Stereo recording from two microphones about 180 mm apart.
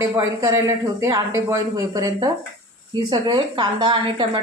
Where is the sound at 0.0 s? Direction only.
15° right (ahead or behind).